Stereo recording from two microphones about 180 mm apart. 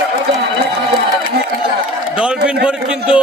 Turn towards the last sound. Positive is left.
turn(degrees=-5)  # may be behind; listen again after turning